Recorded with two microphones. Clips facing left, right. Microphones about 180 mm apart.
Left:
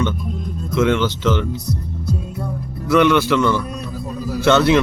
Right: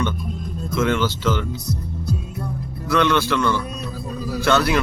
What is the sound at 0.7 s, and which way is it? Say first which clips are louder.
Speech: left 3 dB; 20° left (ahead or behind).